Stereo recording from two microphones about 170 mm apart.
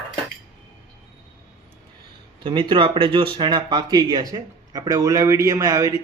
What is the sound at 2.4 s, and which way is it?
Speech, 30° right (ahead or behind).